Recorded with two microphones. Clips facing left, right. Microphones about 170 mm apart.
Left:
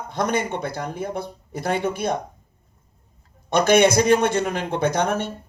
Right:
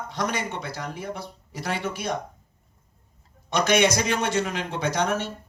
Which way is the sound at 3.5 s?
55° left (ahead or behind).